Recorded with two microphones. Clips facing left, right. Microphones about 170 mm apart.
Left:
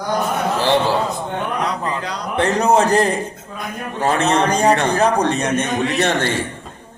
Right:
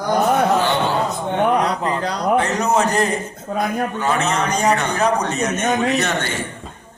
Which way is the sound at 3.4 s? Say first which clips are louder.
Right 8 dB; 65° right (ahead or behind).